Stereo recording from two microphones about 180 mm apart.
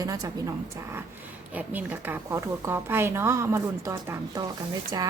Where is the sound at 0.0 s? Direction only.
20° right (ahead or behind).